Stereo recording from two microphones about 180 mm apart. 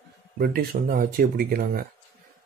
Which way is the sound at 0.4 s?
55° right (ahead or behind).